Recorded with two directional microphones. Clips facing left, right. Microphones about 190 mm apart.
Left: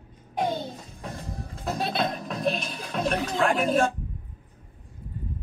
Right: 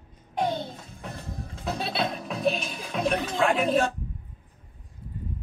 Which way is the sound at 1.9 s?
5° right (ahead or behind).